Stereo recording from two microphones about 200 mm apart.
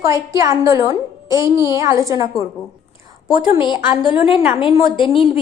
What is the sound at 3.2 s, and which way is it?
A woman's voice, 25° left (ahead or behind).